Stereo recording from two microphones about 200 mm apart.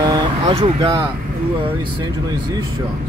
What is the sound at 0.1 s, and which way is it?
Vehicle, 25° right (ahead or behind).